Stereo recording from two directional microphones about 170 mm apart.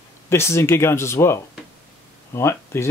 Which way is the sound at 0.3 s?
15° left (ahead or behind).